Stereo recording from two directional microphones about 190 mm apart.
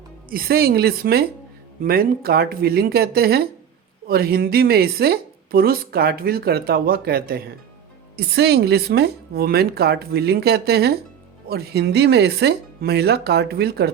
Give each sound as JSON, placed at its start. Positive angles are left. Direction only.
{"t": 0.3, "sound": "a woman's voice", "side_deg": -50}